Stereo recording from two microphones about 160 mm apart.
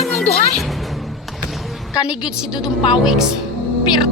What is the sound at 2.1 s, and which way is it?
Speech, 5° right (ahead or behind).